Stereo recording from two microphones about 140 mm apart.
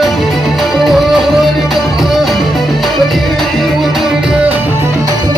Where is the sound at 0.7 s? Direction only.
Centre (ahead or behind).